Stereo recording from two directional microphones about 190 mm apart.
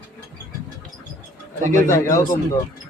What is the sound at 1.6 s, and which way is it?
Speech, 40° right (ahead or behind).